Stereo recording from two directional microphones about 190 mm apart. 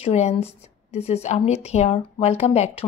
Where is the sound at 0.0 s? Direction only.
35° left (ahead or behind).